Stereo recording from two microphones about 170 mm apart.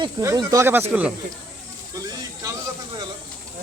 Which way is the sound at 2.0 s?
20° right (ahead or behind).